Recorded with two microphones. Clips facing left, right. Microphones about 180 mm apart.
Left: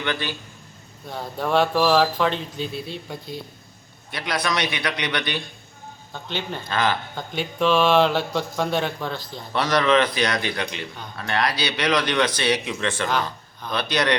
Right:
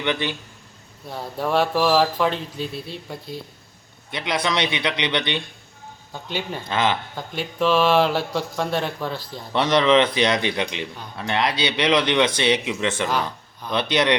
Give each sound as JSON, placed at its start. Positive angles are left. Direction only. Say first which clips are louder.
{"t": 0.0, "sound": "speech", "louder": "right 3 dB", "side_deg": -20}
{"t": 1.0, "sound": "speech", "louder": "right 1 dB", "side_deg": -5}
{"t": 4.1, "sound": "speech", "louder": "right 2 dB", "side_deg": -20}
{"t": 6.2, "sound": "speech", "louder": "right 1 dB", "side_deg": -10}
{"t": 6.7, "sound": "speech", "louder": "right 1 dB", "side_deg": -20}
{"t": 7.2, "sound": "speech", "louder": "even", "side_deg": -5}
{"t": 9.5, "sound": "speech", "louder": "right 2 dB", "side_deg": -25}
{"t": 13.1, "sound": "a man's voice", "louder": "even", "side_deg": -10}
{"t": 13.7, "sound": "speech", "louder": "right 2 dB", "side_deg": -25}